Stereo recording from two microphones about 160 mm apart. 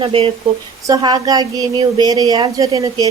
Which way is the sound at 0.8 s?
25° right (ahead or behind).